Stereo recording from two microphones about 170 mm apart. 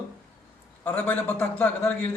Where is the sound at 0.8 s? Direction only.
10° left (ahead or behind).